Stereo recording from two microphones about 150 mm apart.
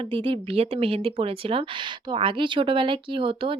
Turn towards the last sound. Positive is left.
turn(degrees=-35)  # may be behind; listen again after turning